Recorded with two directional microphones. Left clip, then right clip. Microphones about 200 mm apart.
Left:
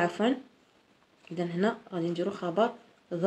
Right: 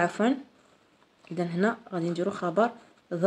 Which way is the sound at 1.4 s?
35° right (ahead or behind).